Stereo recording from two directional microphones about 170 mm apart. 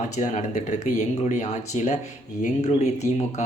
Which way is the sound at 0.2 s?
45° left (ahead or behind).